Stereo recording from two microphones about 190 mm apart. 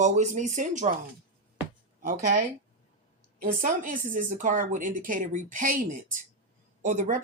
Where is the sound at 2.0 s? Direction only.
45° right (ahead or behind).